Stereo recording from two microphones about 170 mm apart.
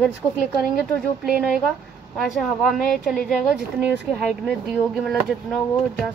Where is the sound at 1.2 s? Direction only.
5° right (ahead or behind).